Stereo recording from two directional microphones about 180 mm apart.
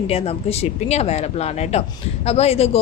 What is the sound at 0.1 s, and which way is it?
Speech, 35° left (ahead or behind).